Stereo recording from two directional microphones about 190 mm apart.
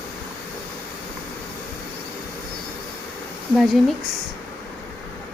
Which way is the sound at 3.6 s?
Centre (ahead or behind).